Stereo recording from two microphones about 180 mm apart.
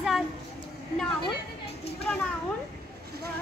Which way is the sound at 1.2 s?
35° left (ahead or behind).